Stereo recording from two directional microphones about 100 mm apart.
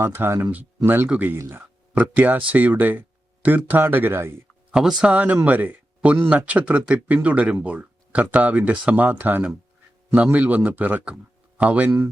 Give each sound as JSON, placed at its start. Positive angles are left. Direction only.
{"t": 0.0, "sound": "speech", "side_deg": -25}
{"t": 4.7, "sound": "speech", "side_deg": -5}